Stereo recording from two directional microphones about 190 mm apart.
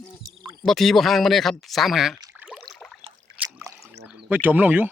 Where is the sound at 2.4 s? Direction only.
10° right (ahead or behind).